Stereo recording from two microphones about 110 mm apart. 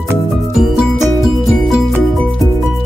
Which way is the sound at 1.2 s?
Centre (ahead or behind).